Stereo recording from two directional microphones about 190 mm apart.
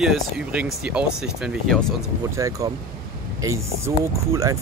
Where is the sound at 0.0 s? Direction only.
5° right (ahead or behind).